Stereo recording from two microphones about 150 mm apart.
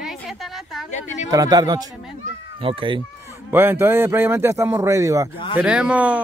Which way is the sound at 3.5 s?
15° right (ahead or behind).